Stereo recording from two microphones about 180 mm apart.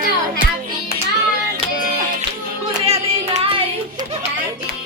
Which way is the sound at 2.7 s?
35° right (ahead or behind).